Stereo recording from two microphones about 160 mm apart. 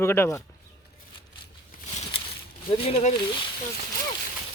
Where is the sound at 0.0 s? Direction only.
15° left (ahead or behind).